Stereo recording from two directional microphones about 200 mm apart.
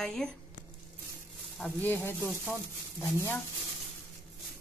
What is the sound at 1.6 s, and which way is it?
Speech, 10° left (ahead or behind).